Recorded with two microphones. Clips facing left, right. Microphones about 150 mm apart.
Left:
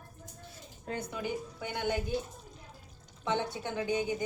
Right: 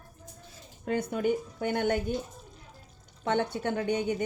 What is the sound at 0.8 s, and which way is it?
Speech, 65° right (ahead or behind).